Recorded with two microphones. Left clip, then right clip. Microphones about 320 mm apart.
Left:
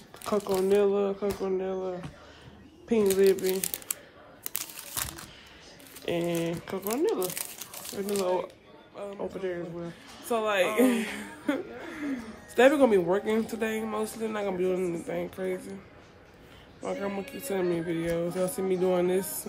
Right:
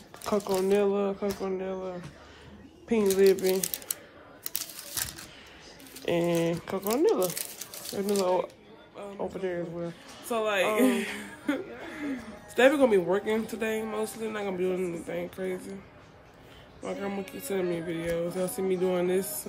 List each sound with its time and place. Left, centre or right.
0.2 s speech: centre
6.0 s speech: centre
9.8 s speech: centre
16.8 s speech: centre